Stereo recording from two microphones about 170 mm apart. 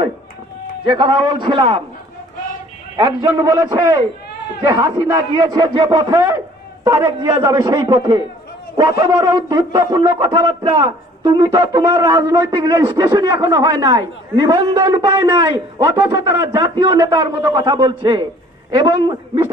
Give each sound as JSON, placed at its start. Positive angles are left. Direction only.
{"t": 0.8, "sound": "speech", "side_deg": -30}
{"t": 3.0, "sound": "a man's voice", "side_deg": -25}